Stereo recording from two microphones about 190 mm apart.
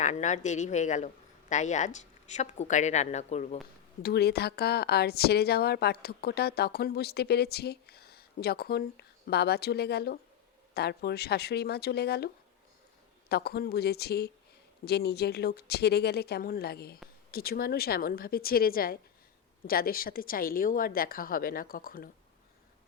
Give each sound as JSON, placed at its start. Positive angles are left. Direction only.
{"t": 0.0, "sound": "a man's voice", "side_deg": 40}
{"t": 4.0, "sound": "a woman's voice", "side_deg": 60}